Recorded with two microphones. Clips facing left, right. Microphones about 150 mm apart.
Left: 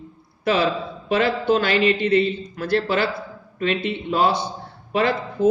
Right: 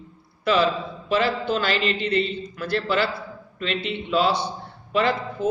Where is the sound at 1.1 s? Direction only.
55° left (ahead or behind).